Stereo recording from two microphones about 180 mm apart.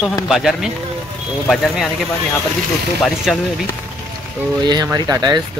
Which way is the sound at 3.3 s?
Centre (ahead or behind).